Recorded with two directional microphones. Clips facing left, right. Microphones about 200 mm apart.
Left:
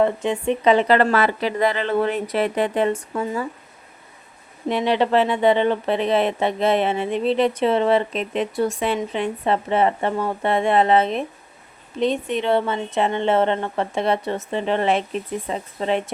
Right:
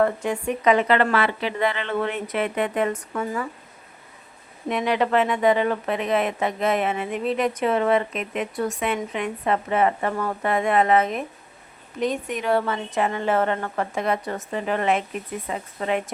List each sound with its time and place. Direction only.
0.0 s speech: 20° left (ahead or behind)
4.7 s a woman's voice: 30° left (ahead or behind)